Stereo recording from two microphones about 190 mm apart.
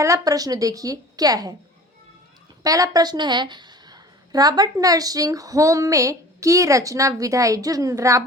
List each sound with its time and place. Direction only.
0.0 s a woman's voice: 15° right (ahead or behind)
2.6 s a woman's voice: 20° right (ahead or behind)